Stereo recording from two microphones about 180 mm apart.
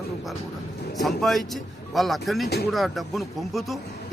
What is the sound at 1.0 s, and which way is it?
Speech, centre (ahead or behind).